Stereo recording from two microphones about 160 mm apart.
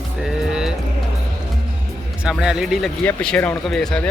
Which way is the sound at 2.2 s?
5° right (ahead or behind).